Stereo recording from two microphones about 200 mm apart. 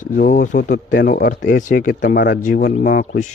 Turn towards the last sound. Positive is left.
turn(degrees=45)  # may be behind; listen again after turning